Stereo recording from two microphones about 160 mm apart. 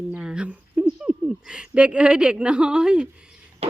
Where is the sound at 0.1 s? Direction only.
5° right (ahead or behind).